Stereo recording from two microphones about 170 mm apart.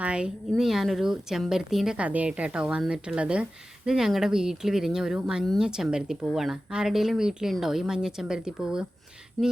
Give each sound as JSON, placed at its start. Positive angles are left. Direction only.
{"t": 0.0, "sound": "speech", "side_deg": -5}